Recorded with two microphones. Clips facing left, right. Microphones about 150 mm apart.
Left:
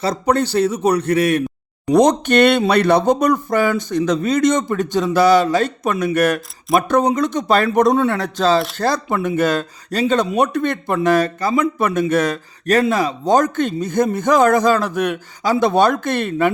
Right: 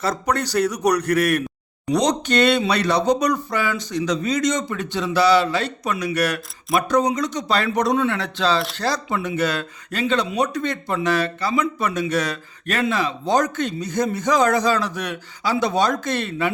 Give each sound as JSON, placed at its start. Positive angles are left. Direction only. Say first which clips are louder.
{"t": 0.0, "sound": "speech", "louder": "left 5 dB", "side_deg": 30}
{"t": 1.9, "sound": "speech", "louder": "left 6 dB", "side_deg": 50}